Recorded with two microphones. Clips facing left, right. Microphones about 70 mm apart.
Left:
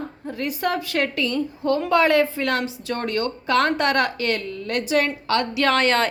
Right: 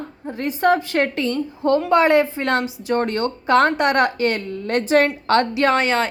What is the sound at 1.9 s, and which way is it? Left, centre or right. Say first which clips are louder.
A woman's voice: right 1 dB; right.